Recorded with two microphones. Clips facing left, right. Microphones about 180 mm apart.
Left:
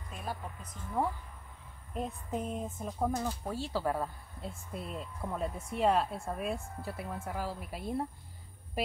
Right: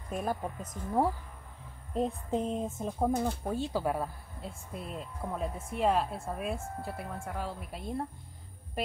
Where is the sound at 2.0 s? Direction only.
30° right (ahead or behind); by 4.1 s 10° right (ahead or behind).